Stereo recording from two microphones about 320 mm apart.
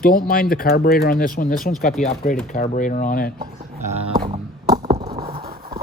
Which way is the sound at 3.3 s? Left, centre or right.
Centre.